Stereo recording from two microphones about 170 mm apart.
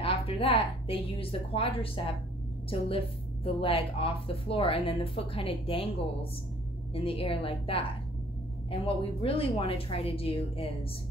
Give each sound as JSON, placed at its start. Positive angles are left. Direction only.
{"t": 0.0, "sound": "speech", "side_deg": 35}
{"t": 3.4, "sound": "speech", "side_deg": 35}